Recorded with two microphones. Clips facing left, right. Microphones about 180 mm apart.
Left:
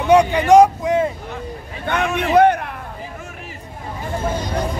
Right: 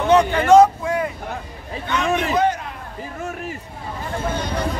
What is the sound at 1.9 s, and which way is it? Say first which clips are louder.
Speech: left 1 dB; 55° left (ahead or behind).